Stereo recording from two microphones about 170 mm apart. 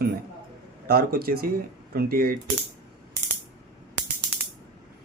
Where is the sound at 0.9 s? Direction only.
60° right (ahead or behind).